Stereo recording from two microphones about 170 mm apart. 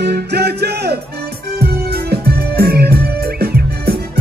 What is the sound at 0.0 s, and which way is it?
Music, 75° right (ahead or behind).